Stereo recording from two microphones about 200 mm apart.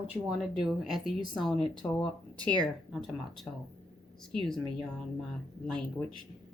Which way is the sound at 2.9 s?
Centre (ahead or behind).